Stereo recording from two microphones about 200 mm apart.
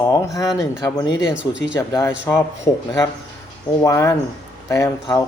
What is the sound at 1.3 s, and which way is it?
Speech, 5° right (ahead or behind).